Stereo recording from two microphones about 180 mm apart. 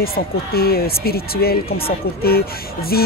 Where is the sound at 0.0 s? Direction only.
55° left (ahead or behind).